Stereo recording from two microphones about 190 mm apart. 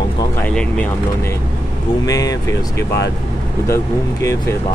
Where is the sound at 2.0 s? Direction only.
20° left (ahead or behind).